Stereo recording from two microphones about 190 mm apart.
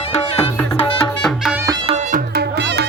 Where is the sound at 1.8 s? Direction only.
35° right (ahead or behind).